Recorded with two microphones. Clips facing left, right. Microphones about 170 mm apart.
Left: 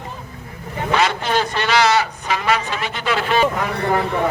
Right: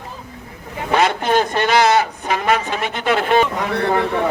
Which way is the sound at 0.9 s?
50° right (ahead or behind).